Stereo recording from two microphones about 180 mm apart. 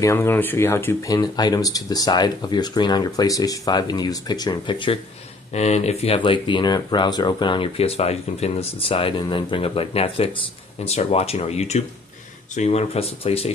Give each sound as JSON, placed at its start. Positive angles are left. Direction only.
{"t": 0.0, "sound": "speech", "side_deg": 15}